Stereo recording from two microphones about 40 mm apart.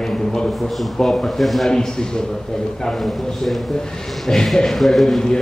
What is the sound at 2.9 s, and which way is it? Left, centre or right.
A man's voice, centre.